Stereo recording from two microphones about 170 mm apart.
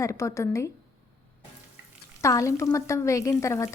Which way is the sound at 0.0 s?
20° left (ahead or behind).